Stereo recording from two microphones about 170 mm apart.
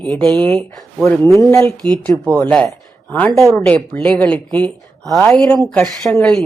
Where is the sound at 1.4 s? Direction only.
15° left (ahead or behind).